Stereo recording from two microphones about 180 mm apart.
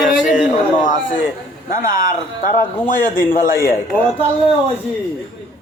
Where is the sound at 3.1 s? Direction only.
50° left (ahead or behind).